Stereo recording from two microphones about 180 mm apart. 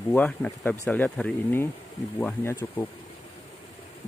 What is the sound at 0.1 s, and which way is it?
Speech, 10° left (ahead or behind).